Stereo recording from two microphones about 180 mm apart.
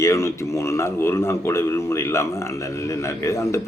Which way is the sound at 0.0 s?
15° left (ahead or behind).